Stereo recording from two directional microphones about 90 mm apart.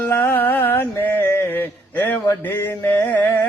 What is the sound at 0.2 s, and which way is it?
Mantra, 25° left (ahead or behind).